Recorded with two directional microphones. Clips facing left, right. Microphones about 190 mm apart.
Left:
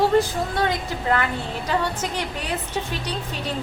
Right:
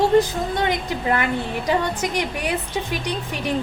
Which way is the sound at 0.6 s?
20° right (ahead or behind).